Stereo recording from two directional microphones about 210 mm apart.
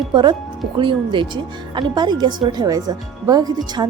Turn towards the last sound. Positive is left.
turn(degrees=-20)  # may be behind; listen again after turning